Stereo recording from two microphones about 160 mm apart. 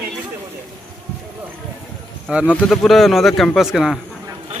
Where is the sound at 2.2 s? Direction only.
5° right (ahead or behind).